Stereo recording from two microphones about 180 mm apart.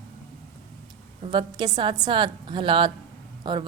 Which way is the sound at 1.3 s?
25° right (ahead or behind).